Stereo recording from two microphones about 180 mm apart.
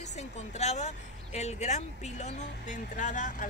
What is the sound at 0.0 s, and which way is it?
A woman's voice, 40° left (ahead or behind).